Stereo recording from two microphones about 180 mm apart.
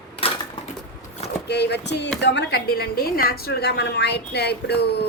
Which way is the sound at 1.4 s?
70° left (ahead or behind).